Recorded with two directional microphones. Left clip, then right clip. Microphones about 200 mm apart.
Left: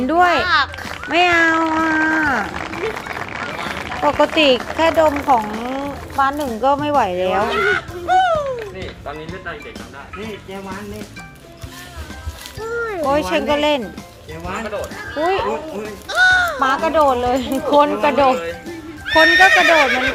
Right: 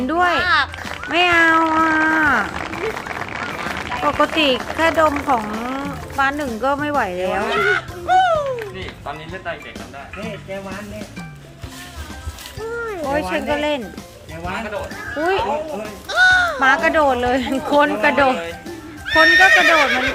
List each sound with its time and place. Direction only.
0.1 s speech: 10° left (ahead or behind)
7.4 s a sound: centre (ahead or behind)
13.1 s speech: 20° left (ahead or behind)
15.2 s speech: 5° right (ahead or behind)